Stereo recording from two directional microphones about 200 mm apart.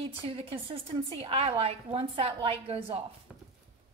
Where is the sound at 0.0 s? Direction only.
30° right (ahead or behind).